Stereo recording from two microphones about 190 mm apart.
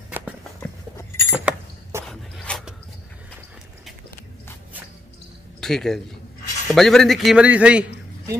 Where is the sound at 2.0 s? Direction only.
5° left (ahead or behind).